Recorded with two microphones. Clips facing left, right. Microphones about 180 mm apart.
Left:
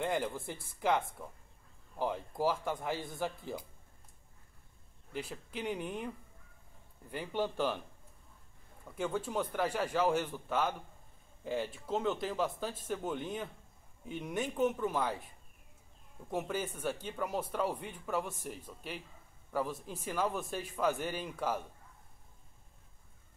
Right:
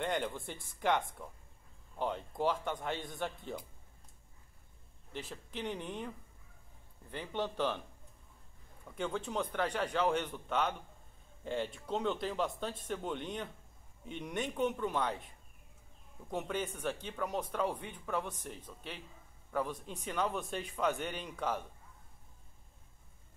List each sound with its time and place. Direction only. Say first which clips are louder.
0.0 s speech: left 1 dB; 5° left (ahead or behind)
5.1 s speech: left 2 dB; 10° left (ahead or behind)
7.1 s speech: left 2 dB; 10° left (ahead or behind)
8.9 s speech: left 2 dB; 5° left (ahead or behind)
16.3 s speech: left 1 dB; 5° left (ahead or behind)